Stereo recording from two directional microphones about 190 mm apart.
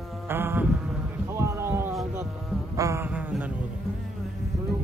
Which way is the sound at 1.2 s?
15° right (ahead or behind).